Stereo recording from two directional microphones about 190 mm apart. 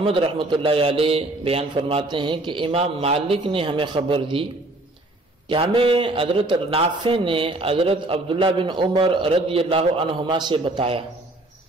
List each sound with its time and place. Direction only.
0.0 s a man's voice: 30° right (ahead or behind)
5.5 s a man's voice: 25° right (ahead or behind)